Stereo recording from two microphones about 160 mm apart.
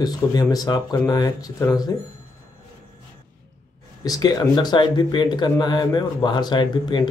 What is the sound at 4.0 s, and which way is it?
Speech, 25° left (ahead or behind).